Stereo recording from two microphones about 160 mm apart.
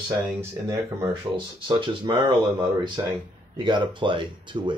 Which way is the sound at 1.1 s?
30° right (ahead or behind).